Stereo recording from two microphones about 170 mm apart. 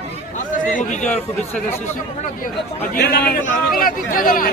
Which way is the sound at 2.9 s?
70° left (ahead or behind).